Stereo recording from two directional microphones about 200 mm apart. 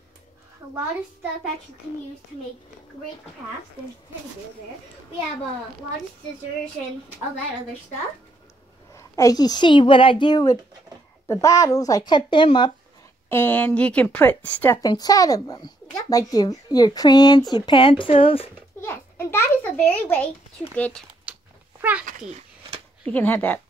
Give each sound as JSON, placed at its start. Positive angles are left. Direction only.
{"t": 8.9, "sound": "speech", "side_deg": 15}
{"t": 13.3, "sound": "a woman's voice", "side_deg": 10}
{"t": 18.8, "sound": "a child's voice", "side_deg": 10}
{"t": 21.3, "sound": "cat", "side_deg": -5}
{"t": 23.0, "sound": "a woman's voice", "side_deg": 10}